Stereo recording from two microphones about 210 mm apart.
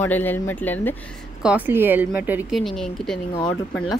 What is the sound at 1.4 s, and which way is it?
Speech, 10° right (ahead or behind).